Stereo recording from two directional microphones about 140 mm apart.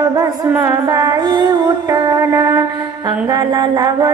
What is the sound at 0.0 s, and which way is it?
Music, 25° right (ahead or behind).